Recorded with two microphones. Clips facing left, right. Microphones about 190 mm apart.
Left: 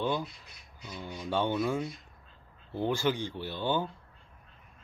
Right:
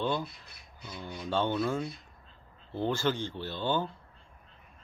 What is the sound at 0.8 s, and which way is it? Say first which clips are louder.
Speech: even; 10° left (ahead or behind).